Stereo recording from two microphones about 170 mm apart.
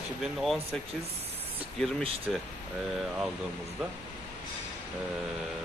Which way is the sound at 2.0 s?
35° right (ahead or behind).